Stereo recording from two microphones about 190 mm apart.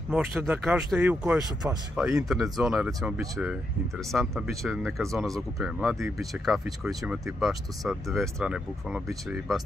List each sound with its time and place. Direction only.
0.4 s speech: 10° right (ahead or behind)
2.2 s speech: centre (ahead or behind)